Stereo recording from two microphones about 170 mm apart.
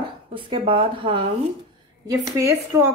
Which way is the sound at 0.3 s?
30° right (ahead or behind).